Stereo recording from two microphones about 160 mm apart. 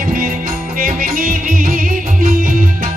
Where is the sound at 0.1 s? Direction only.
60° right (ahead or behind).